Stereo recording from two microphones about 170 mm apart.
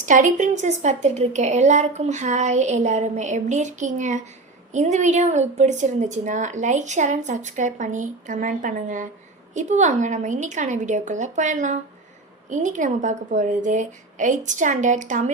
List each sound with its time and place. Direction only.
0.0 s a woman's voice: 50° right (ahead or behind)